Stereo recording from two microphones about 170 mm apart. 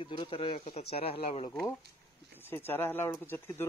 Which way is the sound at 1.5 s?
10° left (ahead or behind).